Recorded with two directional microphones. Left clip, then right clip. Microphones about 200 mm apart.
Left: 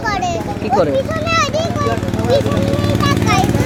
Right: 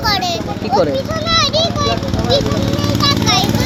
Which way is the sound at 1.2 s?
20° left (ahead or behind).